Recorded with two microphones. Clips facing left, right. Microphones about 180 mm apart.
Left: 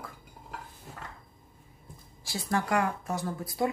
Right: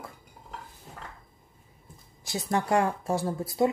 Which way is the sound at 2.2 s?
20° right (ahead or behind).